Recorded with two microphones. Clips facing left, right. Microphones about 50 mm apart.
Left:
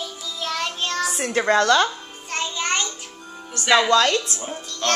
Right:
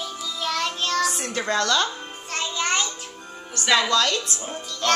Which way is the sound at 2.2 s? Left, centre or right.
Centre.